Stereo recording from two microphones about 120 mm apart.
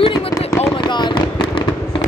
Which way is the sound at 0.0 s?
50° left (ahead or behind).